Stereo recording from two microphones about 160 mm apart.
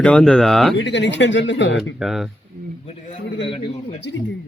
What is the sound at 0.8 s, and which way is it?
Speech, 90° left.